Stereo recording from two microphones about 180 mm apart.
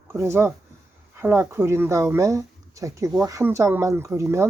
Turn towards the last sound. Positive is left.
turn(degrees=-15)  # may be behind; listen again after turning